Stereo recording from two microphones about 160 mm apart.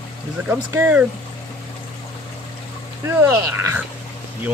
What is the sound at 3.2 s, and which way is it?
Speech, 15° right (ahead or behind).